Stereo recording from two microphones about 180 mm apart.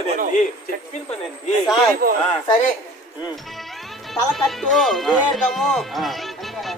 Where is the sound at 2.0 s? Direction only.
55° right (ahead or behind).